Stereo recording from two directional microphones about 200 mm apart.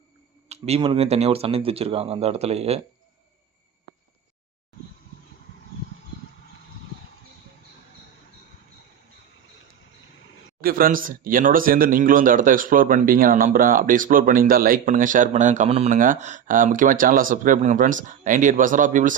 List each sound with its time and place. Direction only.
0.4 s speech: 30° right (ahead or behind)
10.6 s speech: 45° right (ahead or behind)